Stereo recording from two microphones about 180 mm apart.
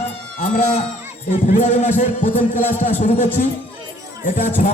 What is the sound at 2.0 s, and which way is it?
Music, 45° left (ahead or behind).